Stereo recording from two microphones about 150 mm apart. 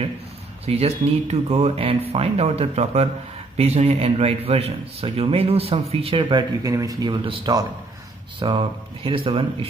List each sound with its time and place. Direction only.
0.7 s speech: 45° right (ahead or behind)